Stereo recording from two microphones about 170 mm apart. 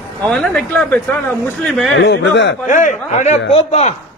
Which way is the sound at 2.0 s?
90° left.